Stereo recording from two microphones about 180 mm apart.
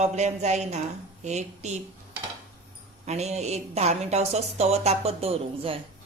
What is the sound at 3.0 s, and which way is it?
Speech, 40° right (ahead or behind).